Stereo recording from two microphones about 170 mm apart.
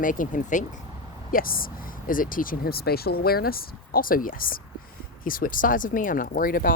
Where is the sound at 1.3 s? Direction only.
55° left (ahead or behind).